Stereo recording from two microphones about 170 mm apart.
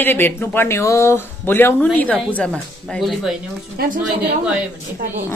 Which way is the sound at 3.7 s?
60° right (ahead or behind).